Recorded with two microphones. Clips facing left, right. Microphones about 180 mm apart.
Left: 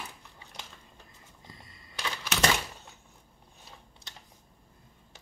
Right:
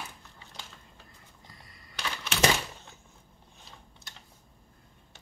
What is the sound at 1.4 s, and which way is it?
Skateboard, 25° left (ahead or behind).